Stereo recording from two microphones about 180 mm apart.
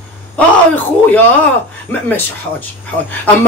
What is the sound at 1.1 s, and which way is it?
Speech, 10° left (ahead or behind).